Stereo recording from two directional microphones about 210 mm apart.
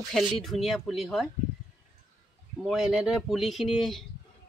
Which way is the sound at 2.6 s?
Centre (ahead or behind).